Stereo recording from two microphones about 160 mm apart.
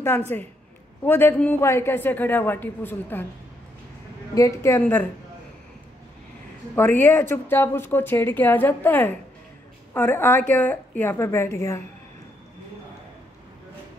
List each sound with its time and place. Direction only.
0.3 s speech: 10° left (ahead or behind)
4.4 s speech: 15° left (ahead or behind)
6.7 s speech: 10° left (ahead or behind)